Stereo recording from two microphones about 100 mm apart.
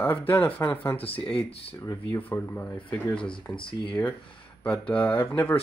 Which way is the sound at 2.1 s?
20° left (ahead or behind).